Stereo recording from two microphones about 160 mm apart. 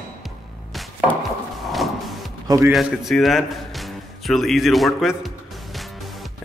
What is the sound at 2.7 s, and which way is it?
A man's voice, centre (ahead or behind).